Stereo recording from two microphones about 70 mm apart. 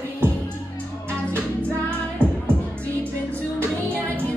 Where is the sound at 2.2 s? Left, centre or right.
Right.